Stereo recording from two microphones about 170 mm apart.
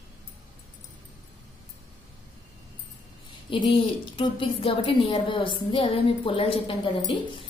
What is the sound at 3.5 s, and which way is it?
A woman's voice, 30° left (ahead or behind).